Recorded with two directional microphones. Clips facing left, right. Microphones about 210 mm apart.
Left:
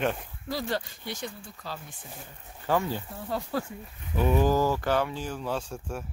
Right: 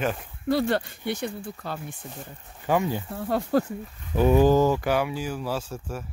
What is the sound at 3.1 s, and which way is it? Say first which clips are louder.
Speech: right 9 dB; 60° right (ahead or behind).